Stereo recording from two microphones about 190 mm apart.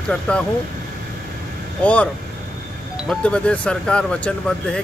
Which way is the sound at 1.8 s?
5° left (ahead or behind).